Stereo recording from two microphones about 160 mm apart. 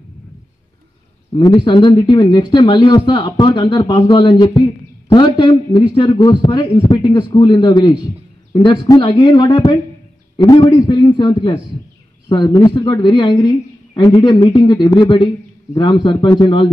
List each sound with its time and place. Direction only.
1.3 s speech: 30° left (ahead or behind)